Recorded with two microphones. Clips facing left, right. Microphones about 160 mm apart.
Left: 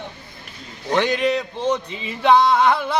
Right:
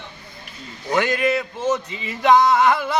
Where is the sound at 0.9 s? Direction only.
5° right (ahead or behind).